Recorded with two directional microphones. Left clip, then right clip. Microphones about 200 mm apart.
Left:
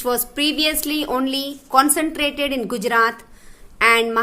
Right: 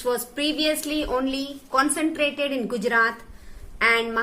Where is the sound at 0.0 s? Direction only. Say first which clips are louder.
Left 4 dB; 50° left (ahead or behind).